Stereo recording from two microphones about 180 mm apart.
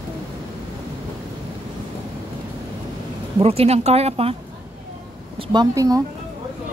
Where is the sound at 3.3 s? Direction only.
35° right (ahead or behind).